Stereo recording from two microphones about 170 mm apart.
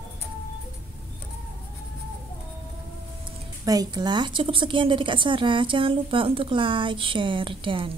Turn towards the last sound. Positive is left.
turn(degrees=-30)  # may be behind; listen again after turning